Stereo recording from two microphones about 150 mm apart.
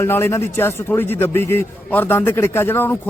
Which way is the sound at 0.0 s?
15° left (ahead or behind).